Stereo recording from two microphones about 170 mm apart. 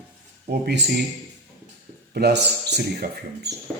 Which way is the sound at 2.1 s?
70° right (ahead or behind).